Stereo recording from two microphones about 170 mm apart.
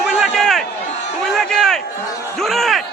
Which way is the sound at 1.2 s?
Centre (ahead or behind).